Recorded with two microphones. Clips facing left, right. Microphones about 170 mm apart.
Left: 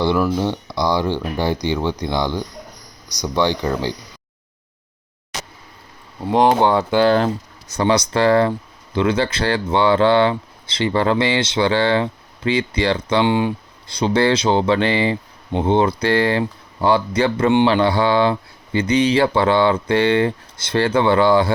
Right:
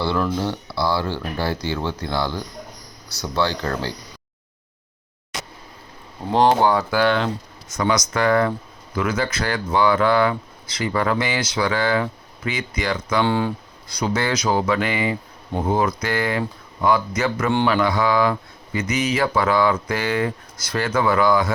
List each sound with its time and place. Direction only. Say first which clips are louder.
0.0 s speech: left 4 dB; 15° left (ahead or behind)
6.3 s speech: left 2 dB; 20° left (ahead or behind)
13.2 s speech: left 3 dB; 20° left (ahead or behind)